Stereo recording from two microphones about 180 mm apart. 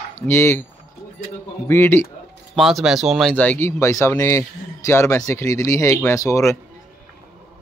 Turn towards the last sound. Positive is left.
turn(degrees=15)  # may be behind; listen again after turning